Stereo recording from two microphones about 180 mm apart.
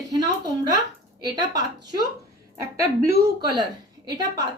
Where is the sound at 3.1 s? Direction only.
20° right (ahead or behind).